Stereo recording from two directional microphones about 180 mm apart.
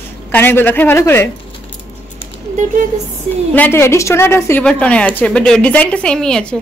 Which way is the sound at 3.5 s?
10° left (ahead or behind).